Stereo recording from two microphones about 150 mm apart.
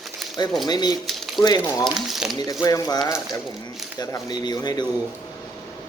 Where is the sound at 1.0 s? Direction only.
Centre (ahead or behind).